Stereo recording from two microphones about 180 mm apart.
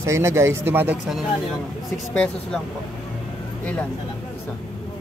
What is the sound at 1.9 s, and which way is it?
Speech, 5° left (ahead or behind).